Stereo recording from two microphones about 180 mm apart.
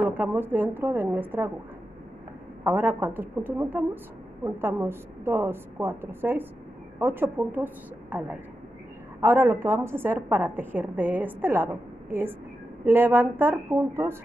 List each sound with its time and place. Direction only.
0.0 s a woman's voice: 10° right (ahead or behind)
2.6 s a woman's voice: 10° right (ahead or behind)